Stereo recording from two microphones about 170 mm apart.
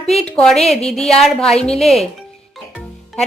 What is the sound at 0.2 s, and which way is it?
A woman's voice, 5° left (ahead or behind).